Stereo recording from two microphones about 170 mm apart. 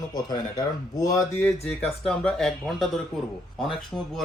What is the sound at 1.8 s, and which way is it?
Speech, 5° left (ahead or behind).